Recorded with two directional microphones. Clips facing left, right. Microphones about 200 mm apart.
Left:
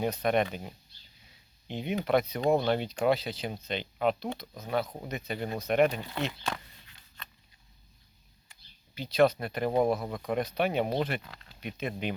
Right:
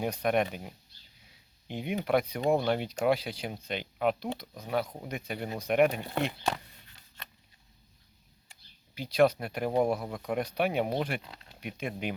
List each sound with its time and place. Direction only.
0.0 s speech: 10° right (ahead or behind)
6.0 s speech: 50° right (ahead or behind)
9.0 s speech: 10° right (ahead or behind)